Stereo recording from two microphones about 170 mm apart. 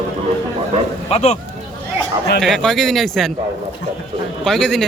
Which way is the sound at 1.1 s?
40° left (ahead or behind).